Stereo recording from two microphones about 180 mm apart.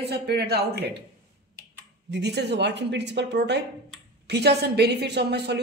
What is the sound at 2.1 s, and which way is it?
A woman's voice, 70° right (ahead or behind).